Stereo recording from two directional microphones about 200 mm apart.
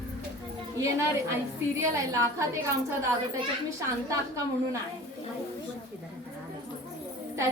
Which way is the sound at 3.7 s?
15° right (ahead or behind).